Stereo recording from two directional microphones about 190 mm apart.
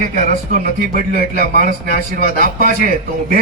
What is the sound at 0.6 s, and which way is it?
Speech, 50° right (ahead or behind).